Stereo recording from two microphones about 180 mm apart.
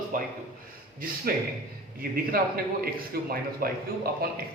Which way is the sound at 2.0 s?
50° right (ahead or behind).